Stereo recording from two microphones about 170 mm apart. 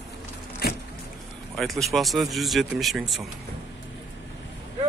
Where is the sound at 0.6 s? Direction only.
65° left (ahead or behind).